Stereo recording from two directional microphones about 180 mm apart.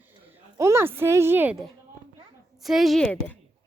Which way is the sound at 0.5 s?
15° right (ahead or behind).